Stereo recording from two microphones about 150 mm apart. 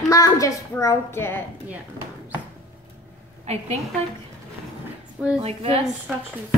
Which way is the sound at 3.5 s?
45° right (ahead or behind).